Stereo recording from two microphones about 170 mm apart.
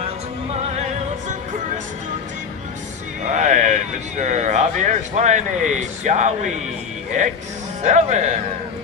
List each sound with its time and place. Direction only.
0.8 s music: 40° right (ahead or behind)
3.2 s a sound: 45° right (ahead or behind)
4.2 s speech: 45° right (ahead or behind)